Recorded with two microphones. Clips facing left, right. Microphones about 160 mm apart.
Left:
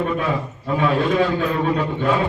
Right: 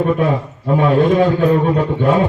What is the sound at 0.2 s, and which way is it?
A man's voice, 45° right (ahead or behind).